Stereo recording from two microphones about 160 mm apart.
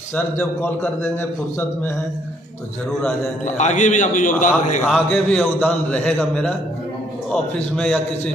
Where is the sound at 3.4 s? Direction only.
50° left (ahead or behind).